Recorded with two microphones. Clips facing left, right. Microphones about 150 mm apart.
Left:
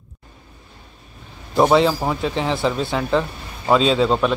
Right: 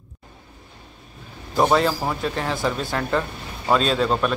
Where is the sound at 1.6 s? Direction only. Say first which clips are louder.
Left 4 dB; 5° left (ahead or behind); by 2.7 s 20° left (ahead or behind).